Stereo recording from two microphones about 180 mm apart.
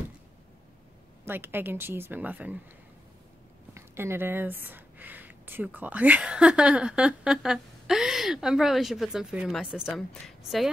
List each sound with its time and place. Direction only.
1.2 s a woman's voice: 10° right (ahead or behind)
3.7 s speech: 15° right (ahead or behind)